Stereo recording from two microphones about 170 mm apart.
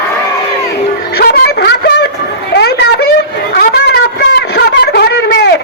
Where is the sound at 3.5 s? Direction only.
70° left (ahead or behind).